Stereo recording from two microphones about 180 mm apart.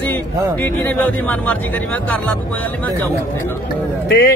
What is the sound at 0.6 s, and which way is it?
Speech, 10° left (ahead or behind).